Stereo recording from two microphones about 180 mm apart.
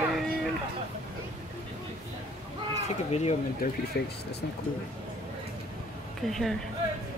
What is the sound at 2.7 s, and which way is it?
Speech, 35° left (ahead or behind).